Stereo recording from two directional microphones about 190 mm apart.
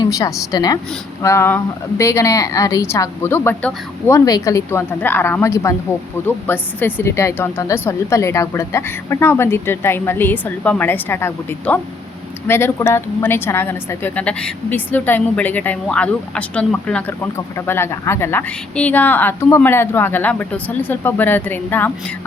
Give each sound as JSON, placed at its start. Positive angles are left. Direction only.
{"t": 0.0, "sound": "a woman's voice", "side_deg": 15}